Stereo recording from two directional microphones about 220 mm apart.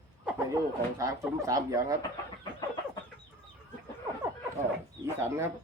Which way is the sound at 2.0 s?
20° left (ahead or behind).